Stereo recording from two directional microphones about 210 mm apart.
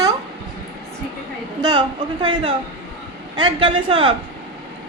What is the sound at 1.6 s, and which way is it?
A woman's voice, 20° right (ahead or behind).